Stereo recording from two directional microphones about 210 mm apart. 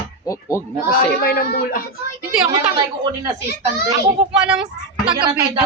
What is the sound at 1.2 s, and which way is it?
Speech, 45° left (ahead or behind).